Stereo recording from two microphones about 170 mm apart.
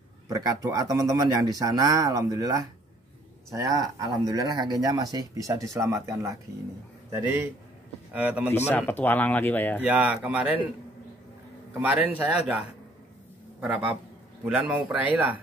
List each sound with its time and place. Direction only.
0.3 s speech: 20° right (ahead or behind)
8.1 s speech: 10° right (ahead or behind)
8.5 s speech: 15° left (ahead or behind)
9.8 s speech: 5° right (ahead or behind)
11.8 s a man's voice: 10° right (ahead or behind)